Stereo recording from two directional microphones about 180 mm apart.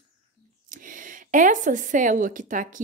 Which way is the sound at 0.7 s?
45° right (ahead or behind).